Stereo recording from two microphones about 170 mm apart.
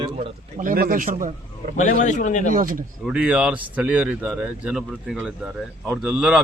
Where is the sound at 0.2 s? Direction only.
45° right (ahead or behind).